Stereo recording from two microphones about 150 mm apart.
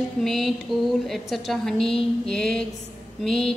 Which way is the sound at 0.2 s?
Centre (ahead or behind).